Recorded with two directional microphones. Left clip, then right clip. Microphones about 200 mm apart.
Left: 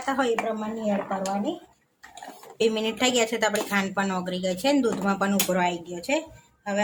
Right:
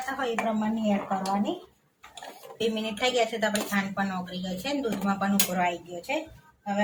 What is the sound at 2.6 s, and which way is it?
Speech, 50° left (ahead or behind).